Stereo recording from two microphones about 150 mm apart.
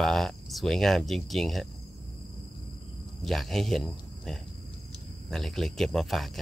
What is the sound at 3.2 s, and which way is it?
Speech, centre (ahead or behind).